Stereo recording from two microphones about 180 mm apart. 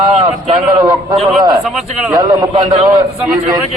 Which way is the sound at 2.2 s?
20° right (ahead or behind).